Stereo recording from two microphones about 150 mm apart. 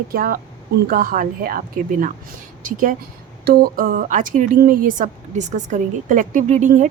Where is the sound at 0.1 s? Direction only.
70° right (ahead or behind).